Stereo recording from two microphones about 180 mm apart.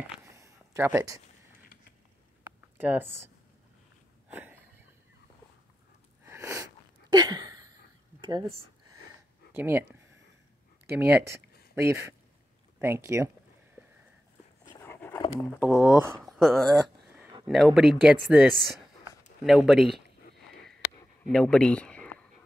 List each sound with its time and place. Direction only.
0.2 s a sound: 15° right (ahead or behind)
2.8 s speech: 10° right (ahead or behind)
4.3 s a sound: 10° right (ahead or behind)
6.2 s sneeze: 15° right (ahead or behind)
8.2 s speech: 20° right (ahead or behind)
9.5 s speech: 10° right (ahead or behind)
10.9 s speech: 65° right (ahead or behind)
11.2 s a sound: 15° right (ahead or behind)
11.9 s speech: 15° right (ahead or behind)
14.6 s dog: 15° left (ahead or behind)
15.6 s speech: centre (ahead or behind)
21.3 s speech: 5° left (ahead or behind)